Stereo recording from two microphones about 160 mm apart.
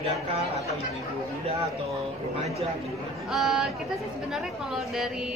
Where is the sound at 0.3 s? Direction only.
40° right (ahead or behind).